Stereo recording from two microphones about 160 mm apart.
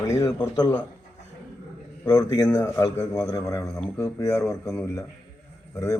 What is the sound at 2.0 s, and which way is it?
A man's voice, 25° left (ahead or behind).